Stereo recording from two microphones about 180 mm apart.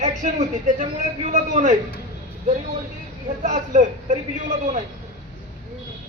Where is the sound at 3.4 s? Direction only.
40° right (ahead or behind).